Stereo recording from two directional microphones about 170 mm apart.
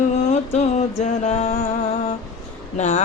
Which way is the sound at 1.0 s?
45° left (ahead or behind).